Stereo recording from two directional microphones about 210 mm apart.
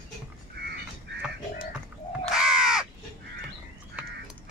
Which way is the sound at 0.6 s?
50° right (ahead or behind).